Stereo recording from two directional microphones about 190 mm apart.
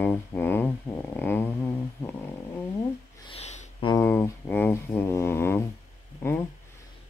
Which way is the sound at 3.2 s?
35° left (ahead or behind).